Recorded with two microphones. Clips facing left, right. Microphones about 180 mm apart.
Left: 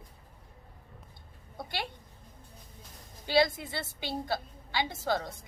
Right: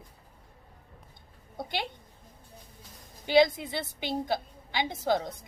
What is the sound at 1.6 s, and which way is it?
Speech, 20° right (ahead or behind).